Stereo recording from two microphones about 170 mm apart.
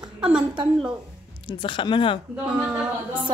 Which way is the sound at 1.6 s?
30° left (ahead or behind).